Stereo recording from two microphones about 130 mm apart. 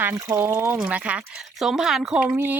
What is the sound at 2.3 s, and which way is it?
Speech, 20° right (ahead or behind).